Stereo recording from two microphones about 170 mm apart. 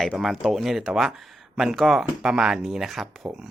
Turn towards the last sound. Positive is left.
turn(degrees=0)  # may be behind; listen again after turning